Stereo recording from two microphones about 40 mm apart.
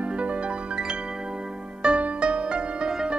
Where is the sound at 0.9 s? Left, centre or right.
Centre.